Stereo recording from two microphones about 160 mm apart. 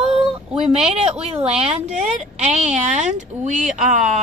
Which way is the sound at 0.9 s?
40° right (ahead or behind).